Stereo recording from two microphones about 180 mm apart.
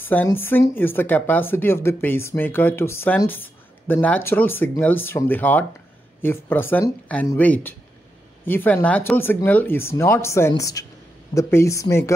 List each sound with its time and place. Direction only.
0.0 s speech: 10° left (ahead or behind)